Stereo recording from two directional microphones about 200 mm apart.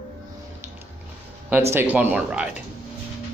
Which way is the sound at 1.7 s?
10° right (ahead or behind).